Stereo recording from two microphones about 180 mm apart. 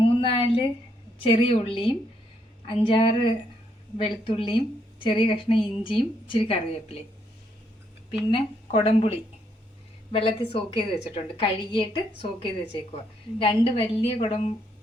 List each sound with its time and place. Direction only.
0.0 s a sound: 30° left (ahead or behind)
1.2 s a woman's voice: 30° left (ahead or behind)
8.3 s a woman's voice: 30° left (ahead or behind)